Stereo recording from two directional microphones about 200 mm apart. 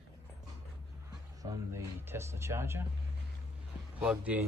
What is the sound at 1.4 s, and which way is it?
Speech, 15° right (ahead or behind).